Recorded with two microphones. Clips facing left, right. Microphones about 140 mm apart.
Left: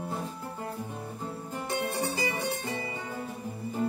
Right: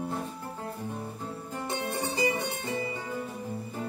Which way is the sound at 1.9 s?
25° right (ahead or behind).